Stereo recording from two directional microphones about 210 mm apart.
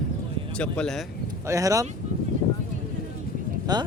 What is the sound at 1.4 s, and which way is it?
Speech, 15° right (ahead or behind).